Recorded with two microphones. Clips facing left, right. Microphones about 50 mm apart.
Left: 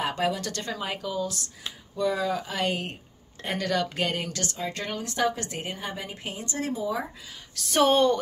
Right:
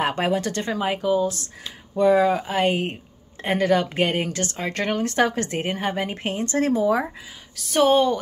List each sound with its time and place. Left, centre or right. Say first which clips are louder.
0.0 s speech: right 5 dB; right
4.6 s a woman's voice: right 9 dB; right
7.5 s a woman's voice: right 4 dB; centre